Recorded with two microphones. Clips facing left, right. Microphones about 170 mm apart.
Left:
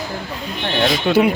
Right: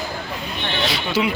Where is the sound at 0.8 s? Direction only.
50° left (ahead or behind).